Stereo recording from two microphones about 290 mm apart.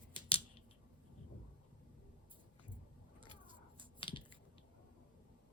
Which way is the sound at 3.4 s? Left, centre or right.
Centre.